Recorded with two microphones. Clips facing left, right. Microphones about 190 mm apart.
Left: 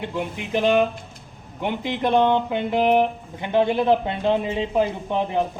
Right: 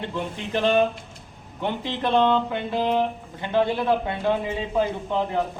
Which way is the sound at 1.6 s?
15° left (ahead or behind).